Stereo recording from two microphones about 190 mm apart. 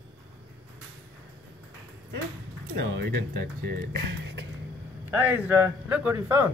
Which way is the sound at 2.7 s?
70° right (ahead or behind).